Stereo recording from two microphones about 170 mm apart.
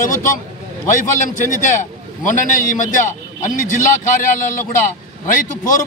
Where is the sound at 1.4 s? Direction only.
50° left (ahead or behind).